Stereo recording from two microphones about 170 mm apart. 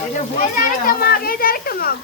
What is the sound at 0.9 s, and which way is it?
A child's voice, 60° left (ahead or behind).